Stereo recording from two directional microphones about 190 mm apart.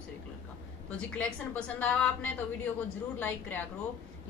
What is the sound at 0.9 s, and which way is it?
A woman's voice, 5° left (ahead or behind).